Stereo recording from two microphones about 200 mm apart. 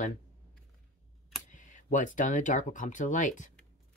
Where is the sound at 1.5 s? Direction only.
40° left (ahead or behind).